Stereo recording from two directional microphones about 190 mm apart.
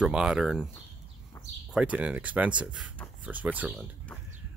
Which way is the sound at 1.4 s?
10° left (ahead or behind).